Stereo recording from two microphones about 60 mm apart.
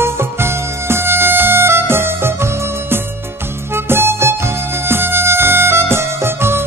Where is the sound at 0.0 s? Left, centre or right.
Right.